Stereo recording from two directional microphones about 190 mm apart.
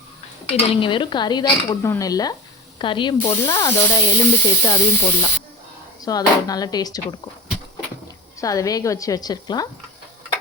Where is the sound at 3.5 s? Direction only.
15° left (ahead or behind).